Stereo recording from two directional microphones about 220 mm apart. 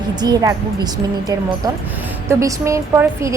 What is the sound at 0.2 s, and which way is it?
Speech, 15° right (ahead or behind).